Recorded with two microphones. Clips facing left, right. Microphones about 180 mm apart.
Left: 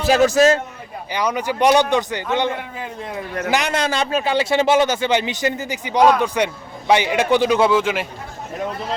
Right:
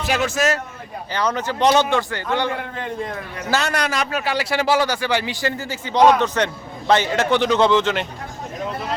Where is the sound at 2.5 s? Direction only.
5° left (ahead or behind).